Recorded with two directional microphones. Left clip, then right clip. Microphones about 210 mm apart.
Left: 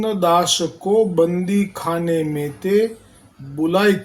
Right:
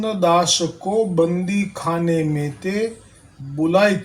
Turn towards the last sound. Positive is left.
turn(degrees=15)  # may be behind; listen again after turning